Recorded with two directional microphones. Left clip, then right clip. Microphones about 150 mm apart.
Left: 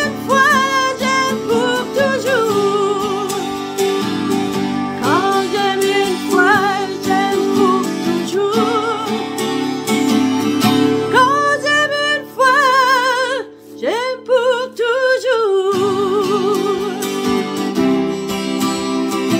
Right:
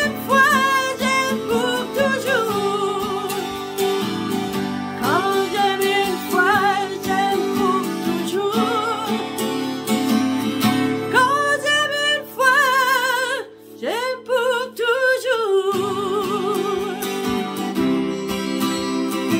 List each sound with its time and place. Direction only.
0.0 s music: centre (ahead or behind)
5.6 s music: centre (ahead or behind)
8.4 s music: centre (ahead or behind)
9.8 s music: 30° left (ahead or behind)
11.1 s music: centre (ahead or behind)
17.7 s music: 40° left (ahead or behind)